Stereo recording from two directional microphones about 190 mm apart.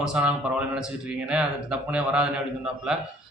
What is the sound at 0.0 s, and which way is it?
Speech, 5° right (ahead or behind).